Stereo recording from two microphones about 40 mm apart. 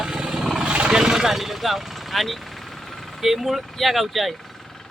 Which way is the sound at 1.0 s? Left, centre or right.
Centre.